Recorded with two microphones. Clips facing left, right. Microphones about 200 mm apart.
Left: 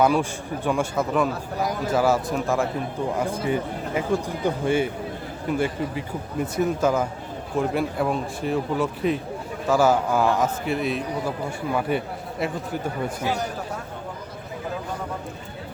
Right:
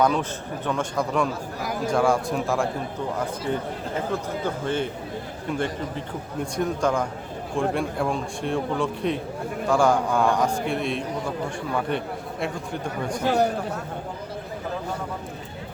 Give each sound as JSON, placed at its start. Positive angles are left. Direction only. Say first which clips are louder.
{"t": 0.0, "sound": "a man's voice", "louder": "left 2 dB", "side_deg": 10}
{"t": 13.2, "sound": "speech", "louder": "right 7 dB", "side_deg": -60}